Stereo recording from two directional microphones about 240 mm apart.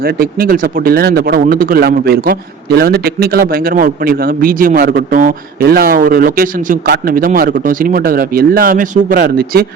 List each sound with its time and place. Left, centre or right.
0.0 s a man's voice: right